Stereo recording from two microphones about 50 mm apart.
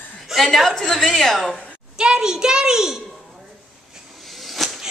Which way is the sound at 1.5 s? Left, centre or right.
Centre.